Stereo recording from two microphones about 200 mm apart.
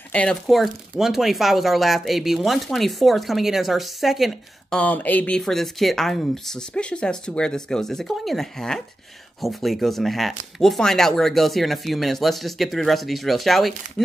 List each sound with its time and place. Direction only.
0.1 s speech: 5° left (ahead or behind)